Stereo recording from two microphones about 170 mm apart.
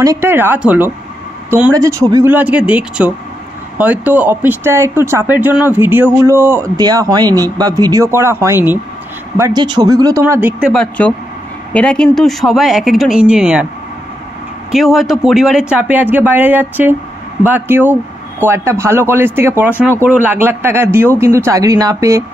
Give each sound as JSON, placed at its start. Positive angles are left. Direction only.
{"t": 0.0, "sound": "speech", "side_deg": -15}
{"t": 2.3, "sound": "speech", "side_deg": -10}
{"t": 10.7, "sound": "speech", "side_deg": 5}
{"t": 14.7, "sound": "speech", "side_deg": 0}